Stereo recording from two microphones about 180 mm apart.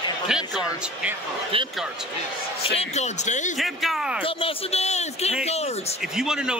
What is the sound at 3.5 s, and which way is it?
Speech, centre (ahead or behind).